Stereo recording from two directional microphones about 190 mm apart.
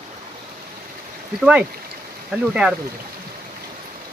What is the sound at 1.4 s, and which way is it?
Speech, 5° right (ahead or behind).